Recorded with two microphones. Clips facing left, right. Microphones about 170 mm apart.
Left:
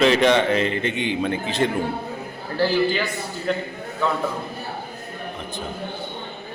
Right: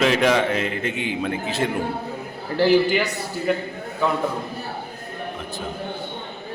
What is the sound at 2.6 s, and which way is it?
A man's voice, 15° right (ahead or behind).